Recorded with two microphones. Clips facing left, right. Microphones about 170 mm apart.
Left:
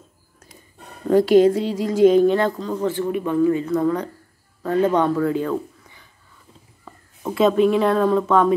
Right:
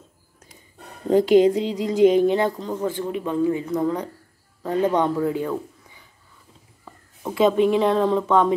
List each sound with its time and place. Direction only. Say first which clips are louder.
1.1 s a man's voice: left 1 dB; 15° right (ahead or behind)
7.3 s speech: left 1 dB; 15° right (ahead or behind)